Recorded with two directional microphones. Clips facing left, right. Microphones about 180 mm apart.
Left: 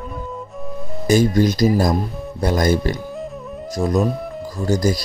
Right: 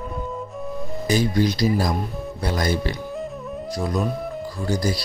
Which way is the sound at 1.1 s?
45° left (ahead or behind).